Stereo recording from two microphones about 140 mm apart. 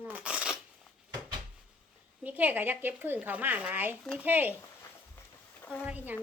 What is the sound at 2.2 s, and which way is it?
Speech, 10° right (ahead or behind).